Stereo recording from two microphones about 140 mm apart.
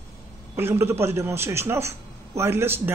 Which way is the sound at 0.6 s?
15° right (ahead or behind).